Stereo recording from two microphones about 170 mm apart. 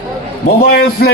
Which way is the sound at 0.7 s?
65° left (ahead or behind).